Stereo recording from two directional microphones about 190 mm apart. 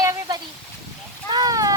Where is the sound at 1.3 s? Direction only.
20° right (ahead or behind).